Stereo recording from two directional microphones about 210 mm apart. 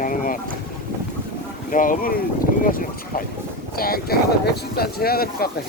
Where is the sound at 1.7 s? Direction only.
40° left (ahead or behind).